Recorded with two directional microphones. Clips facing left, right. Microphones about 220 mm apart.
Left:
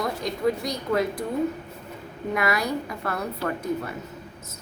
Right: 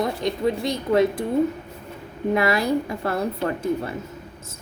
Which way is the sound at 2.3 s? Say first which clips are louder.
Right 4 dB; 30° right (ahead or behind).